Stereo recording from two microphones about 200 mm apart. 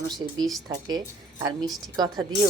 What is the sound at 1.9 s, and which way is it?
Speech, 20° right (ahead or behind).